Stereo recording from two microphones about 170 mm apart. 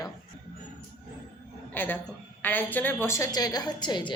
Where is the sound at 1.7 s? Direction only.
10° left (ahead or behind).